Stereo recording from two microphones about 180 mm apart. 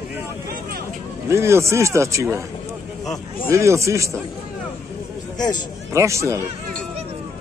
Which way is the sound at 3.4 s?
15° right (ahead or behind).